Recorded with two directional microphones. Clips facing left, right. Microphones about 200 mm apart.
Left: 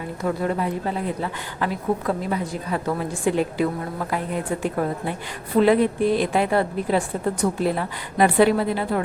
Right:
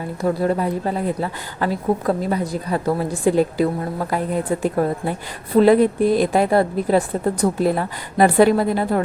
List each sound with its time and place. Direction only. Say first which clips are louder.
0.2 s a woman's voice: right 4 dB; 35° right (ahead or behind)